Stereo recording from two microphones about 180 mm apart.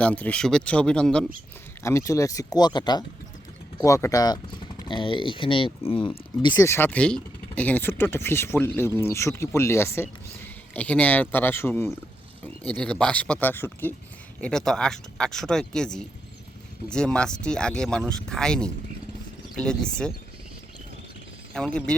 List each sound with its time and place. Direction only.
0.0 s speech: 5° left (ahead or behind)
1.8 s speech: 15° left (ahead or behind)
21.5 s speech: 5° left (ahead or behind)